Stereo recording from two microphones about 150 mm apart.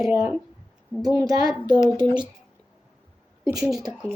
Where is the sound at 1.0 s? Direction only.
25° right (ahead or behind).